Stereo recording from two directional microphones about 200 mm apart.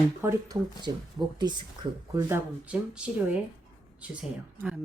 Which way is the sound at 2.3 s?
5° right (ahead or behind).